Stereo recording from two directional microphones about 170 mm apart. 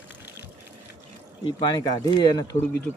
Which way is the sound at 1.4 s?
25° left (ahead or behind).